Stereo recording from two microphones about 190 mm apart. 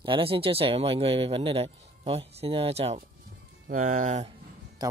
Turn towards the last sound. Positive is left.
turn(degrees=-20)  # may be behind; listen again after turning